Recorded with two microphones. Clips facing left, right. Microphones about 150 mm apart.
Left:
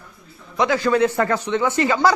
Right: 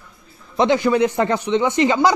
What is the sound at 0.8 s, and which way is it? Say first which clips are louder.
Speech: right 1 dB; 15° right (ahead or behind).